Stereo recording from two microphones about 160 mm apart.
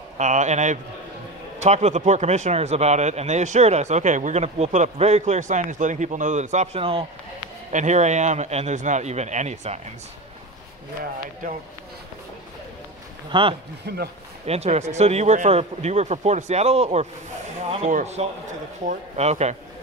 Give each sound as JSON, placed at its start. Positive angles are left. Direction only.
{"t": 0.2, "sound": "speech", "side_deg": -50}
{"t": 7.7, "sound": "speech", "side_deg": -45}
{"t": 13.3, "sound": "speech", "side_deg": -30}
{"t": 13.9, "sound": "speech", "side_deg": -90}
{"t": 14.4, "sound": "speech", "side_deg": -40}